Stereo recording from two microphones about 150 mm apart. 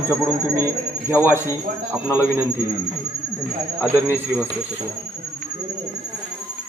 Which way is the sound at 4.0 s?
15° right (ahead or behind).